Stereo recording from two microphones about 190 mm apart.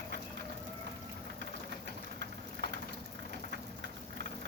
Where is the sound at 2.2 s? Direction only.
65° right (ahead or behind).